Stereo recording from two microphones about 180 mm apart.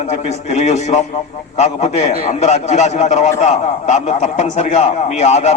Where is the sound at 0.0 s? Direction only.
40° left (ahead or behind).